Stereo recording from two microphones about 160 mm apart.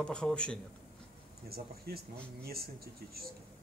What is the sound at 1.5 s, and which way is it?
Speech, 70° right (ahead or behind).